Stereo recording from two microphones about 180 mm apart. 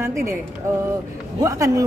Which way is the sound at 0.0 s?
15° right (ahead or behind).